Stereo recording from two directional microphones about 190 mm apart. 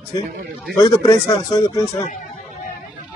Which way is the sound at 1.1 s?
15° left (ahead or behind).